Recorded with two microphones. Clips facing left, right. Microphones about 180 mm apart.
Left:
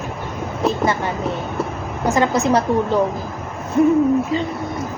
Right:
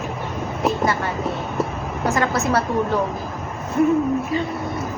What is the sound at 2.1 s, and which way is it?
Speech, 20° left (ahead or behind).